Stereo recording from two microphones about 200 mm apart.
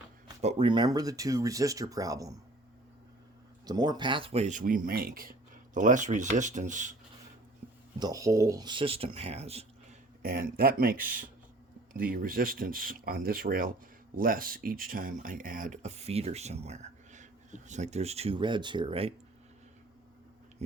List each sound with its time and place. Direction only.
0.4 s speech: 25° right (ahead or behind)
3.7 s speech: 20° right (ahead or behind); by 6.9 s 40° right (ahead or behind)
7.9 s speech: 20° right (ahead or behind)
10.2 s speech: 50° right (ahead or behind); by 19.1 s 25° right (ahead or behind)